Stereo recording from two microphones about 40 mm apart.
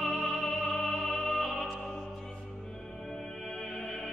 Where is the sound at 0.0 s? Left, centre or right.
Centre.